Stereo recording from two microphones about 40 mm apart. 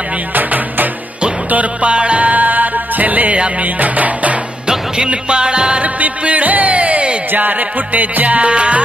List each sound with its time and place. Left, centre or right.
0.3 s music: right
1.5 s music: right
4.6 s music: right
5.9 s music: right
7.3 s music: right